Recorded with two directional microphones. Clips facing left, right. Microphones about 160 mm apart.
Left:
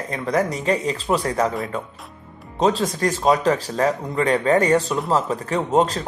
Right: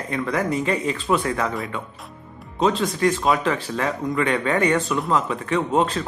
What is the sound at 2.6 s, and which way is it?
Speech, 40° left (ahead or behind).